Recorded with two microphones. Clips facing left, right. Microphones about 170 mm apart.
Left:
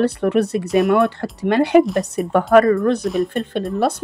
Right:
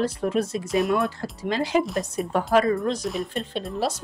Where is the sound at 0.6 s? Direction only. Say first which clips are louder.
Left 6 dB; centre (ahead or behind).